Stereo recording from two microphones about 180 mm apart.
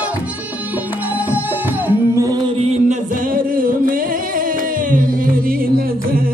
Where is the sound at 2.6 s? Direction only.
35° right (ahead or behind).